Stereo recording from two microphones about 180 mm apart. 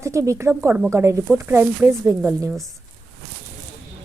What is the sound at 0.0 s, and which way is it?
Speech, 15° right (ahead or behind).